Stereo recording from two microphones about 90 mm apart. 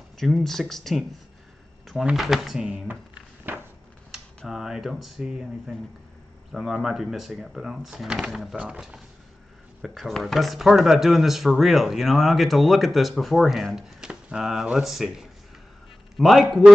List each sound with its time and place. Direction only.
0.2 s speech: 5° left (ahead or behind)
2.1 s speech: centre (ahead or behind)
2.9 s a sound: 20° right (ahead or behind)
4.5 s speech: 5° right (ahead or behind)